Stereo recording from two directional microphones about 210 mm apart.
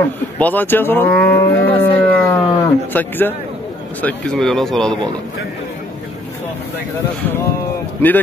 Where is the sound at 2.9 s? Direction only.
10° left (ahead or behind).